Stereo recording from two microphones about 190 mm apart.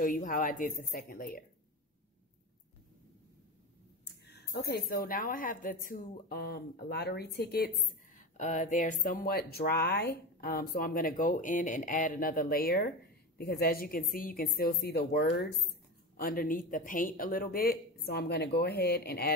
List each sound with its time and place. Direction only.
0.0 s a woman's voice: 45° left (ahead or behind)
4.3 s a woman's voice: 60° left (ahead or behind)